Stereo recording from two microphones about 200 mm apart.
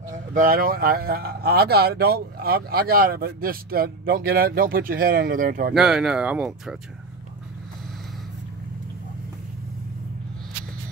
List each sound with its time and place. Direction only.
0.1 s speech: 45° right (ahead or behind)
5.8 s speech: centre (ahead or behind)